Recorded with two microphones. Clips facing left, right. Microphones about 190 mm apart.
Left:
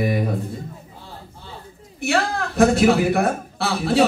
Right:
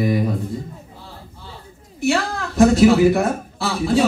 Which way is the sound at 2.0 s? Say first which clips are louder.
Right 1 dB; 60° left (ahead or behind).